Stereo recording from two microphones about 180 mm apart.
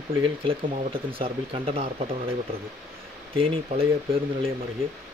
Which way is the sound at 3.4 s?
30° right (ahead or behind).